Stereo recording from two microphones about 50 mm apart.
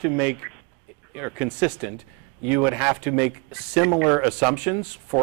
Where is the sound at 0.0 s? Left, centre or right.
Right.